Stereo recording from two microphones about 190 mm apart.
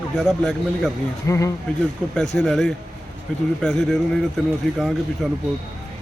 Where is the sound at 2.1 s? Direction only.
5° left (ahead or behind).